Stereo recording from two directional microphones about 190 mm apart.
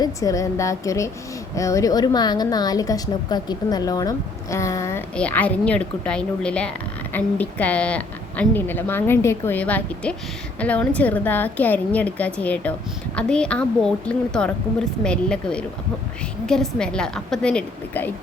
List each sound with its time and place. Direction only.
0.0 s a woman's voice: 20° left (ahead or behind)